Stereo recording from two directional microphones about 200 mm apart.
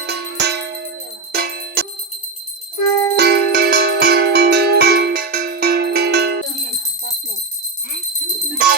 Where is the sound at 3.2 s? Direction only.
55° right (ahead or behind).